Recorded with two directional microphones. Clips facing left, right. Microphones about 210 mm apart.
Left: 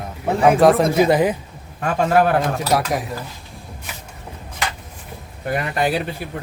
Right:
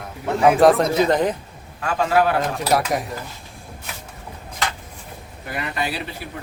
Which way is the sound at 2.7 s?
Centre (ahead or behind).